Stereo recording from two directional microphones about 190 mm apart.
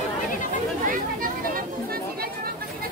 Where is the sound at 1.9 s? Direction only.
50° right (ahead or behind).